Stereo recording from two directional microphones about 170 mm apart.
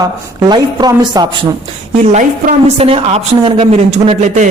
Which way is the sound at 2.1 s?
40° right (ahead or behind).